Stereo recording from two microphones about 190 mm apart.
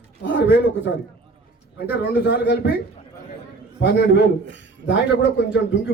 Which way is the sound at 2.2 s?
60° left (ahead or behind).